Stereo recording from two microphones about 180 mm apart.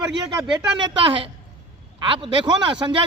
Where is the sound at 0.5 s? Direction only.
25° right (ahead or behind).